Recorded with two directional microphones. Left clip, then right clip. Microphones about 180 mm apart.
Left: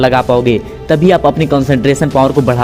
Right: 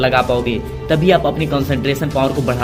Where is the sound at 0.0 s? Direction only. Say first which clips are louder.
Left 5 dB; 55° left (ahead or behind).